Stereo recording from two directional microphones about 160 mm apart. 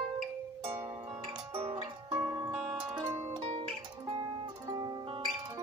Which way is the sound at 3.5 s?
35° right (ahead or behind).